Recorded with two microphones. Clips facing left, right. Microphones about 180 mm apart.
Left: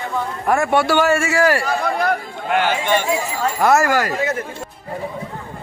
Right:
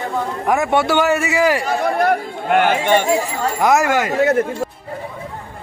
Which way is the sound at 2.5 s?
55° right (ahead or behind).